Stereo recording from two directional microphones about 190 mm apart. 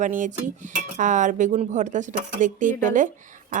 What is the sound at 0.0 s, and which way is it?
Speech, 40° right (ahead or behind).